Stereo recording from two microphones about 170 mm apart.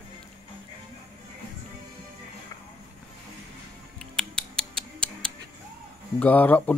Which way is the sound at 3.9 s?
5° left (ahead or behind).